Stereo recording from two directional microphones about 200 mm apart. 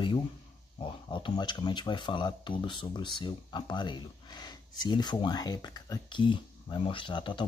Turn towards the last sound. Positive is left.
turn(degrees=25)  # may be behind; listen again after turning